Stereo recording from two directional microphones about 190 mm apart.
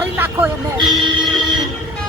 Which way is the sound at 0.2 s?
10° right (ahead or behind).